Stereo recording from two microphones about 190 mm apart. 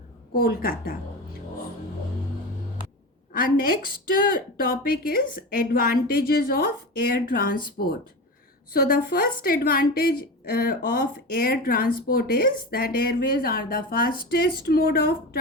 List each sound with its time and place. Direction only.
0.3 s a woman's voice: 50° left (ahead or behind)
3.3 s a woman's voice: 50° left (ahead or behind)
8.7 s a woman's voice: 50° left (ahead or behind)